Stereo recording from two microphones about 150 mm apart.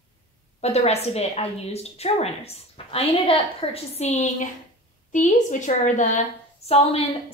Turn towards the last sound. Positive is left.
turn(degrees=40)  # may be behind; listen again after turning